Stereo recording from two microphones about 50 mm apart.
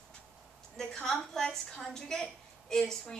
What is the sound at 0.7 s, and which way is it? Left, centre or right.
A woman's voice, centre.